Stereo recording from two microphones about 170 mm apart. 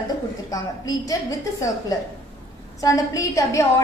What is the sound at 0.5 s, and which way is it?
Speech, 20° left (ahead or behind).